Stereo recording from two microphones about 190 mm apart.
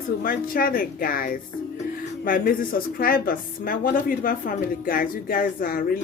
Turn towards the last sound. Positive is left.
turn(degrees=50)  # may be behind; listen again after turning